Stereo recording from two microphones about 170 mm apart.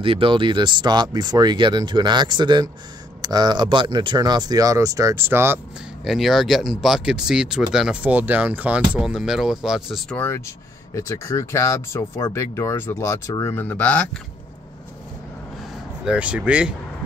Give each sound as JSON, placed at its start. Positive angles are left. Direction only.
{"t": 0.0, "sound": "speech", "side_deg": -30}
{"t": 6.0, "sound": "speech", "side_deg": 0}
{"t": 16.1, "sound": "speech", "side_deg": -5}